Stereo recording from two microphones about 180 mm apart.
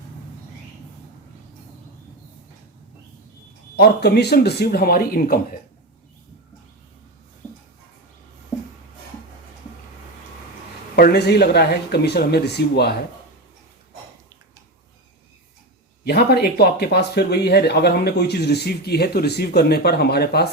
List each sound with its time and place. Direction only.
3.8 s speech: 60° left (ahead or behind)
10.9 s speech: 65° left (ahead or behind)
16.0 s speech: 60° left (ahead or behind)